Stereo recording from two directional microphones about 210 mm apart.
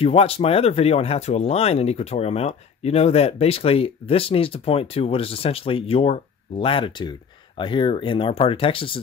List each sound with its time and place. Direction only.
0.0 s speech: 30° left (ahead or behind)